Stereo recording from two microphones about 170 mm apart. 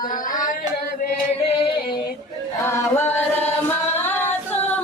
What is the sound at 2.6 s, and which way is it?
Chant, 15° left (ahead or behind).